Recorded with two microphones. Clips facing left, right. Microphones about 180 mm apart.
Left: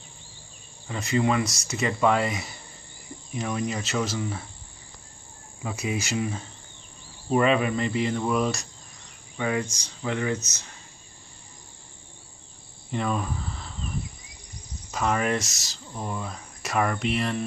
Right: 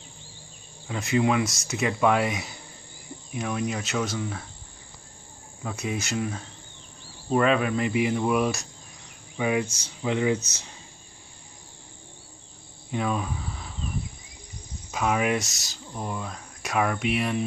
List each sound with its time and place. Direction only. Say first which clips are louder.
0.8 s speech: right 1 dB; 5° right (ahead or behind)
5.6 s speech: left 1 dB; 5° left (ahead or behind); by 10.4 s 15° right (ahead or behind)
12.9 s cricket: even; 5° right (ahead or behind)
14.9 s speech: right 1 dB; 5° right (ahead or behind)